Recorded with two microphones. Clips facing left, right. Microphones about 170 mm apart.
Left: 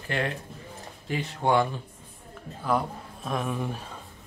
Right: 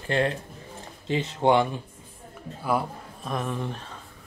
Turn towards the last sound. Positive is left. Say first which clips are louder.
# even
turn(degrees=5)  # may be behind; listen again after turning